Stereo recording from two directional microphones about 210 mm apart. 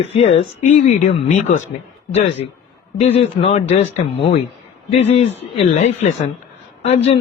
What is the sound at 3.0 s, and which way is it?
Speech, 30° left (ahead or behind).